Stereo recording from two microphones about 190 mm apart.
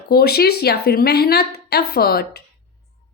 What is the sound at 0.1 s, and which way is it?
Speech, 55° left (ahead or behind).